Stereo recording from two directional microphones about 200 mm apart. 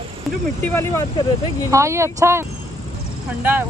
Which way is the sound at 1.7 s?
15° right (ahead or behind).